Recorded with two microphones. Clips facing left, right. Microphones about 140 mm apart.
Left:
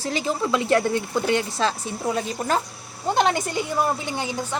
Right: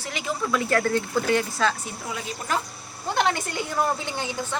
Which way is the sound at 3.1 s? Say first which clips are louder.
Left 3 dB; 20° left (ahead or behind).